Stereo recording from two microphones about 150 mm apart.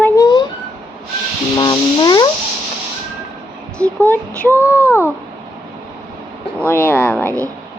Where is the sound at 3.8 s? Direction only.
10° left (ahead or behind).